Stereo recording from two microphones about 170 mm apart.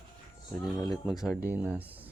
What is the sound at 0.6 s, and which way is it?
Speech, 20° left (ahead or behind).